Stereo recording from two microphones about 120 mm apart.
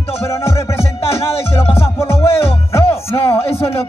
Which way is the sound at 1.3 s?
55° left (ahead or behind).